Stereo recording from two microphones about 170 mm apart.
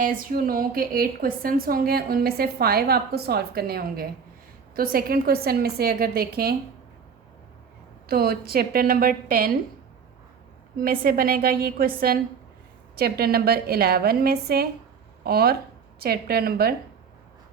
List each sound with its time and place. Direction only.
0.0 s a woman's voice: 55° right (ahead or behind)
8.0 s a woman's voice: 65° right (ahead or behind)
10.8 s a woman's voice: 60° right (ahead or behind)